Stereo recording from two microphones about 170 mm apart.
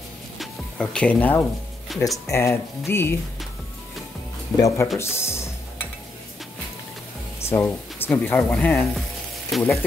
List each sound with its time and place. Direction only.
0.4 s music: 5° left (ahead or behind)
2.2 s speech: 15° left (ahead or behind)
4.6 s speech: 20° left (ahead or behind)
7.3 s speech: 15° left (ahead or behind)